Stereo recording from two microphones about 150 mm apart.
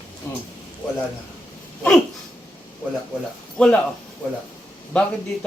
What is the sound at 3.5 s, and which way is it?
Speech, 5° left (ahead or behind).